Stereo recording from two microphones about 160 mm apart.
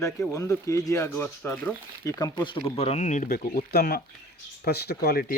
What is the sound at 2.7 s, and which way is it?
Speech, 40° left (ahead or behind).